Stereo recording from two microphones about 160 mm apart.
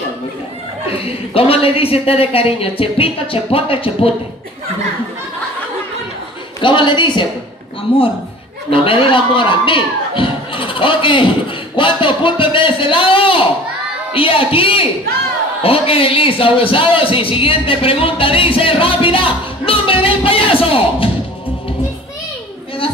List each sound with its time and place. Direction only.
0.8 s a woman's voice: 35° left (ahead or behind)
6.6 s a woman's voice: 30° left (ahead or behind)